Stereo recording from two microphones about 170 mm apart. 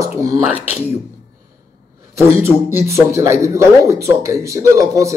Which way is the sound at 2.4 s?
15° right (ahead or behind).